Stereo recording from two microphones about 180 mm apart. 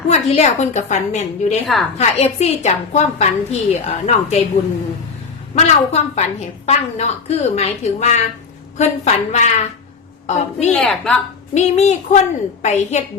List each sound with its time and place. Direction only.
0.1 s a woman's voice: 35° left (ahead or behind)
1.6 s a woman's voice: centre (ahead or behind)
2.0 s a woman's voice: 35° left (ahead or behind)
5.5 s a woman's voice: 40° left (ahead or behind)
10.7 s a woman's voice: 5° left (ahead or behind)
11.5 s a woman's voice: 40° left (ahead or behind)